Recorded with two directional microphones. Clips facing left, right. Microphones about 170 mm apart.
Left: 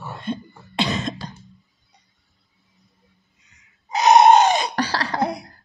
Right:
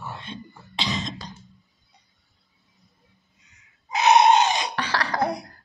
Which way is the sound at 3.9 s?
40° left (ahead or behind).